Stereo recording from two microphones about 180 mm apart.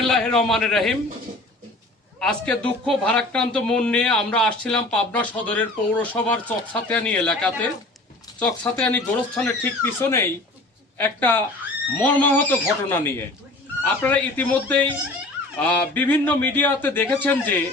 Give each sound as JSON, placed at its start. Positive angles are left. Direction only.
{"t": 0.1, "sound": "speech", "side_deg": 5}
{"t": 2.1, "sound": "speech", "side_deg": 5}